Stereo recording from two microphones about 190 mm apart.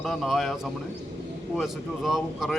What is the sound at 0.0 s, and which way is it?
A man's voice, centre (ahead or behind).